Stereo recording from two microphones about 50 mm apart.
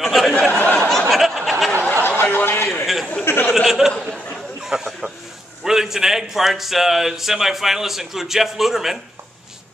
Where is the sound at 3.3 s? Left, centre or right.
Left.